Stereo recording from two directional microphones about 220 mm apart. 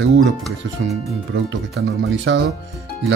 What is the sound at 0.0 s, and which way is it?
Speech, 55° right (ahead or behind).